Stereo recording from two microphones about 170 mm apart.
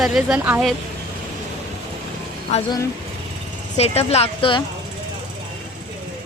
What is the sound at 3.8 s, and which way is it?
Speech, 35° left (ahead or behind).